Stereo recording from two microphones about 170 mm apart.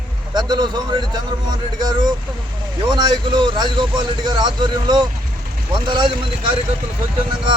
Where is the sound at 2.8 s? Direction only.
25° right (ahead or behind).